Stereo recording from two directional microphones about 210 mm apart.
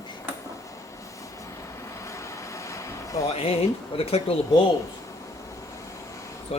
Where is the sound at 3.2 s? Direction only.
30° left (ahead or behind).